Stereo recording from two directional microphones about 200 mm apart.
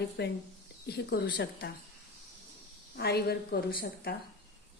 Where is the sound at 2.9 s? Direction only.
55° left (ahead or behind).